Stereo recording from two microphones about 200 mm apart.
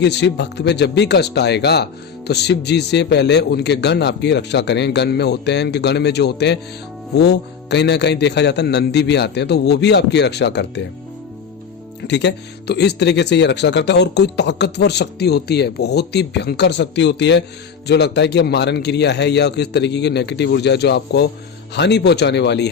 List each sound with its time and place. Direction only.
0.0 s speech: 60° left (ahead or behind)
12.0 s speech: 60° left (ahead or behind)